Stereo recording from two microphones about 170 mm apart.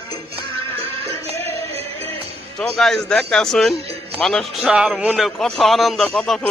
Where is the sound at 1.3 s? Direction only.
35° right (ahead or behind).